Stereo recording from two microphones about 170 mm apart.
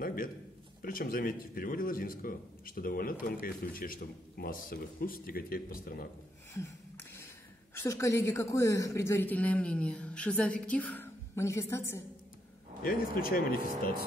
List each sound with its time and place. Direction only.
0.0 s a sound: 55° left (ahead or behind)
0.8 s a man's voice: 55° left (ahead or behind)
7.7 s a woman's voice: 15° left (ahead or behind)
12.8 s a man's voice: 55° left (ahead or behind)